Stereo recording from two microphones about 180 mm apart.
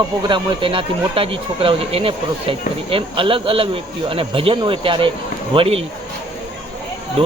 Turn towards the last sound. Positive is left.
turn(degrees=-30)  # may be behind; listen again after turning